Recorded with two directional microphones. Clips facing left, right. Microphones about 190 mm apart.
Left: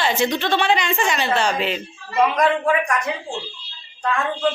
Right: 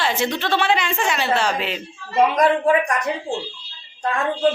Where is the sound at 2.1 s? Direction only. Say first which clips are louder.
Right 1 dB; 35° right (ahead or behind).